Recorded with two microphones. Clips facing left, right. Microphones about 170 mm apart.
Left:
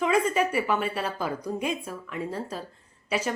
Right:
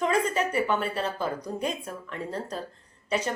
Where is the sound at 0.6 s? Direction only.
5° left (ahead or behind).